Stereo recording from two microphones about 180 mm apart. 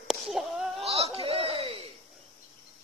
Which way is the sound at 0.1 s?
Centre (ahead or behind).